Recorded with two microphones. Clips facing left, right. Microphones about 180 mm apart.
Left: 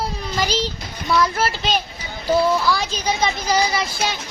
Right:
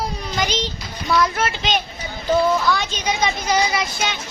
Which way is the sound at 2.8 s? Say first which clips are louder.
Even; 30° left (ahead or behind).